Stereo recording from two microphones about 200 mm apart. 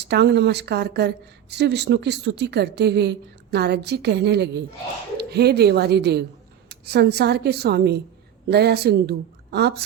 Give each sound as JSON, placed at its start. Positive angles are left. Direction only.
{"t": 0.0, "sound": "a woman's voice", "side_deg": -55}